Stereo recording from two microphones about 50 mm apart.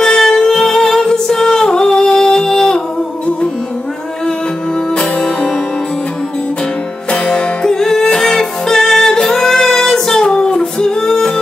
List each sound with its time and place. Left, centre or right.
0.0 s music: centre
4.9 s music: centre
7.1 s music: centre